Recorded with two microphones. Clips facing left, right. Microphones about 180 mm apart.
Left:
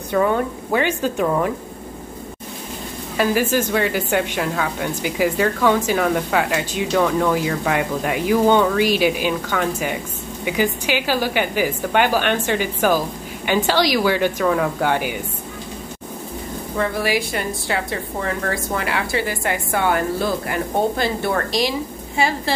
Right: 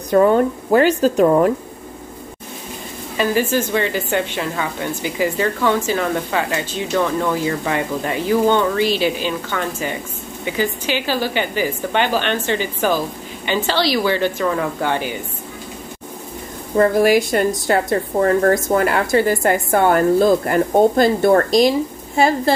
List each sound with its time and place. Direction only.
0.7 s speech: 40° right (ahead or behind)
3.2 s speech: 10° left (ahead or behind)
16.7 s a woman's voice: 45° right (ahead or behind)